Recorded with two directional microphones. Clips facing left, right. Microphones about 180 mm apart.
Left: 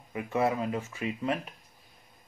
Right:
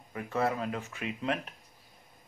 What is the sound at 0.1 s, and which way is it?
Speech, 15° left (ahead or behind).